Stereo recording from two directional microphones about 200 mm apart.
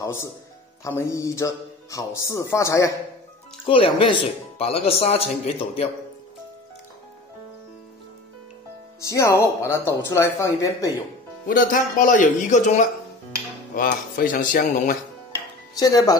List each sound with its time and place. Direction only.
0.0 s speech: 15° left (ahead or behind)
3.6 s speech: 25° left (ahead or behind)
9.0 s speech: 15° left (ahead or behind)
11.4 s speech: 45° left (ahead or behind)
15.8 s speech: 20° left (ahead or behind)